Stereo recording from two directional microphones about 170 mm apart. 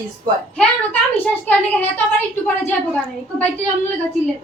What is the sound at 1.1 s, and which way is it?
A woman's voice, 10° left (ahead or behind).